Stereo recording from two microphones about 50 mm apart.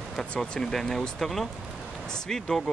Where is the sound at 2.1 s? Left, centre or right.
Centre.